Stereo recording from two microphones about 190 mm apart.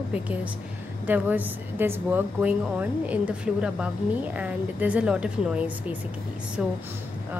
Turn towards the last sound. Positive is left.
turn(degrees=-5)  # may be behind; listen again after turning